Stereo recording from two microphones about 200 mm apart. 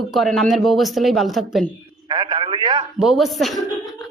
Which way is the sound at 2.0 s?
25° right (ahead or behind).